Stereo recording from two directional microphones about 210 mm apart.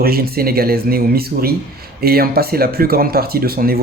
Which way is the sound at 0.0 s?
45° right (ahead or behind).